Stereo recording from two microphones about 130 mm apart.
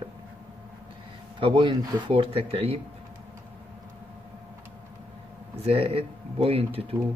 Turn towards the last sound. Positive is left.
turn(degrees=-45)  # may be behind; listen again after turning